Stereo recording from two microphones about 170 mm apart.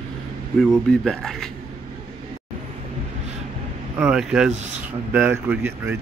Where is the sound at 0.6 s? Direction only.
Centre (ahead or behind).